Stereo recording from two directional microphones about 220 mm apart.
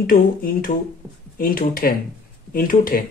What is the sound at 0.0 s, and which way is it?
Speech, 40° left (ahead or behind).